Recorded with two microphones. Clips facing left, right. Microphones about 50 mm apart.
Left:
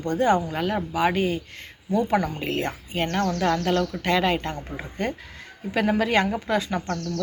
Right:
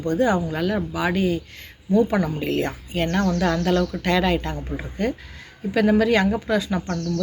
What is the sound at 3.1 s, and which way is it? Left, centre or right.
Speech, centre.